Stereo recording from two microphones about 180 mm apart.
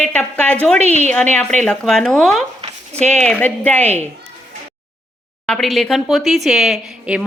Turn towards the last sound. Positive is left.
turn(degrees=0)  # may be behind; listen again after turning